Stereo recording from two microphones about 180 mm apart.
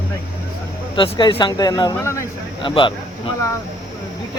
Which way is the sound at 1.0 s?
25° left (ahead or behind).